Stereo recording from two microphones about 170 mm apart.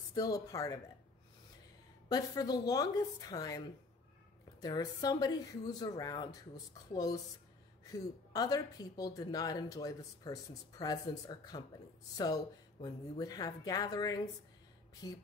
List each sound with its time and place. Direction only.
0.1 s speech: 20° left (ahead or behind)
2.0 s speech: 25° left (ahead or behind)
12.8 s speech: 20° left (ahead or behind)